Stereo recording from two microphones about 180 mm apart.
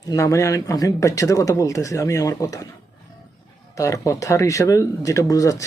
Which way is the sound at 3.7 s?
20° left (ahead or behind).